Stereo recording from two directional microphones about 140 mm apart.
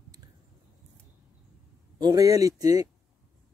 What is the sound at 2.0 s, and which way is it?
Speech, 25° right (ahead or behind).